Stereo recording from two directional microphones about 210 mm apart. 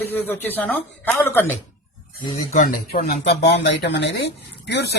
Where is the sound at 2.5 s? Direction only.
40° left (ahead or behind).